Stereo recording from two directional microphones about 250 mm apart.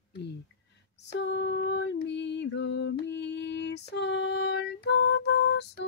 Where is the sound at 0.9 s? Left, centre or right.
Left.